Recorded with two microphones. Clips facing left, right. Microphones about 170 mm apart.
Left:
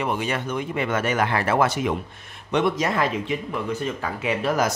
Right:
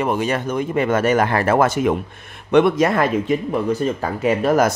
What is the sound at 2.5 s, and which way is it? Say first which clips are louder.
Speech: right 7 dB; 60° right (ahead or behind).